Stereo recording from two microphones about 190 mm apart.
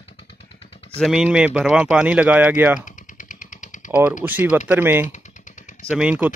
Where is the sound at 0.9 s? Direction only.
5° right (ahead or behind).